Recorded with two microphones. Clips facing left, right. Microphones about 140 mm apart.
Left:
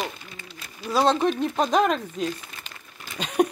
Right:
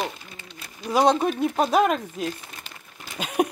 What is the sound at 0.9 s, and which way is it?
Speech, 15° right (ahead or behind).